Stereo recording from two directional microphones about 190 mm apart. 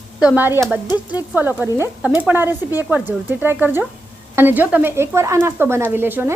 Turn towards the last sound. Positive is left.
turn(degrees=-10)  # may be behind; listen again after turning